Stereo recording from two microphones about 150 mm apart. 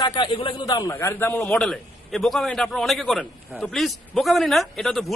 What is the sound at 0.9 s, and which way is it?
Speech, 15° left (ahead or behind).